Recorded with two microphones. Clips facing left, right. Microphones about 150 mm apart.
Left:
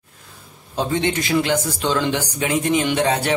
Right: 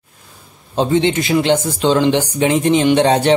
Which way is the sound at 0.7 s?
20° right (ahead or behind).